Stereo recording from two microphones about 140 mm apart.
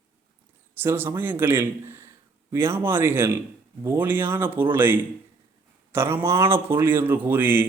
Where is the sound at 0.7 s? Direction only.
15° right (ahead or behind).